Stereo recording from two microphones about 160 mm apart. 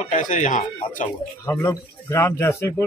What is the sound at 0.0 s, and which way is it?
Speech, 55° left (ahead or behind).